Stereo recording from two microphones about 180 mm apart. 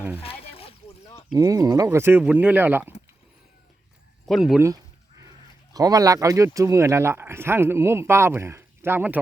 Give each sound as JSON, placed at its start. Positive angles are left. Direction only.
{"t": 0.2, "sound": "a sound", "side_deg": 30}
{"t": 1.4, "sound": "speech", "side_deg": -20}
{"t": 4.3, "sound": "speech", "side_deg": 0}
{"t": 5.7, "sound": "speech", "side_deg": -20}